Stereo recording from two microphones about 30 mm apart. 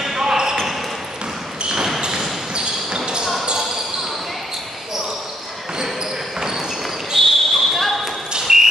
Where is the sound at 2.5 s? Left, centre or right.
Right.